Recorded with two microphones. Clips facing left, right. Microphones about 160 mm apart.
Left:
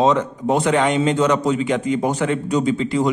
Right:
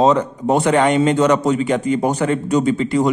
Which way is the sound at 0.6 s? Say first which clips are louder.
Right 4 dB; 55° right (ahead or behind).